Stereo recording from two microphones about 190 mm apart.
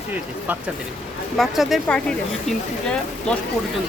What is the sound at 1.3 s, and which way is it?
Speech, centre (ahead or behind).